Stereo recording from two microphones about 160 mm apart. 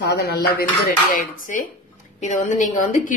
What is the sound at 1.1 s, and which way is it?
Speech, 60° left (ahead or behind).